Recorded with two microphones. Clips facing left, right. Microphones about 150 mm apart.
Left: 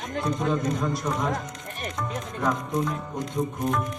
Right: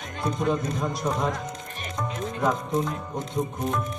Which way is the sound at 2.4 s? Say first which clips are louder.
Right 1 dB; 25° right (ahead or behind).